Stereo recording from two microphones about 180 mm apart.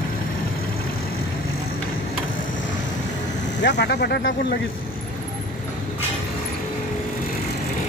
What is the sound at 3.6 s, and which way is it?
Speech, 70° left (ahead or behind).